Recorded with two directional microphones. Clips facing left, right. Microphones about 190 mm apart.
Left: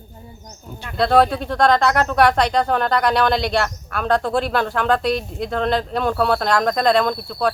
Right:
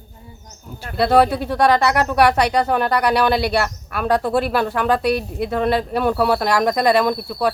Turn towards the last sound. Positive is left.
turn(degrees=-10)  # may be behind; listen again after turning